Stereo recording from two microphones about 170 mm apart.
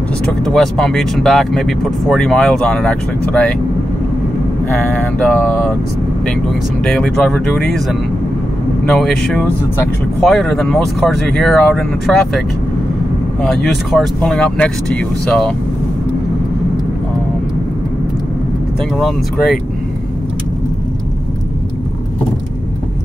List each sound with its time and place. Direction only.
0.3 s speech: 5° left (ahead or behind)
4.9 s speech: 5° left (ahead or behind)
6.8 s speech: 5° left (ahead or behind)
8.8 s speech: centre (ahead or behind)